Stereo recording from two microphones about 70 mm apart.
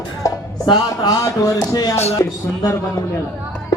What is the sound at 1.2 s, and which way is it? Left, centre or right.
Speech, left.